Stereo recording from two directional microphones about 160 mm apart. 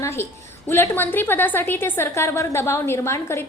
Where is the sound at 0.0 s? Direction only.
15° left (ahead or behind).